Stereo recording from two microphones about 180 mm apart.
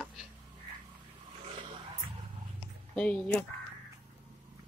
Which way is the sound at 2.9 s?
5° left (ahead or behind).